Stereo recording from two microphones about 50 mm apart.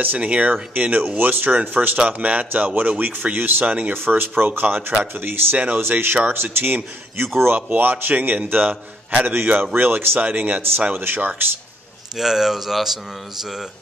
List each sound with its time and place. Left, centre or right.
0.0 s speech: right
12.2 s speech: centre